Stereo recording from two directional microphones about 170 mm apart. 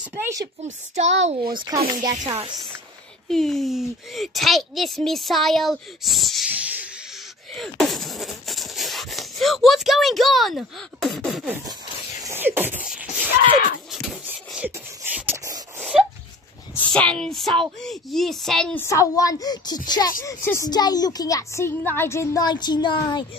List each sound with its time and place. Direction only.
0.1 s beatboxing: 20° right (ahead or behind)
0.7 s speech: 40° right (ahead or behind)
1.5 s music: 25° right (ahead or behind)
3.3 s a child's voice: centre (ahead or behind)
7.5 s a sound: centre (ahead or behind)
12.3 s beatboxing: 10° right (ahead or behind)
13.9 s a sound: 5° right (ahead or behind)
15.8 s a sound: 5° right (ahead or behind)
16.9 s a child's voice: 5° left (ahead or behind)
18.9 s a woman's voice: 20° left (ahead or behind)